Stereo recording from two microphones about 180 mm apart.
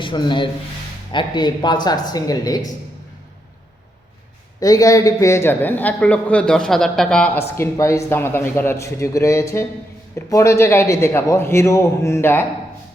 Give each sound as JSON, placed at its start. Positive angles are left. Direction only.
{"t": 0.0, "sound": "speech", "side_deg": 25}
{"t": 4.6, "sound": "a man's voice", "side_deg": 20}